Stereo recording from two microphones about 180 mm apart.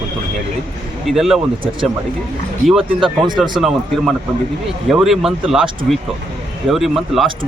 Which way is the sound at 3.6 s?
Centre (ahead or behind).